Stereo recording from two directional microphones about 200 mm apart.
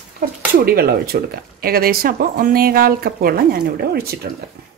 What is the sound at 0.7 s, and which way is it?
Speech, 50° right (ahead or behind).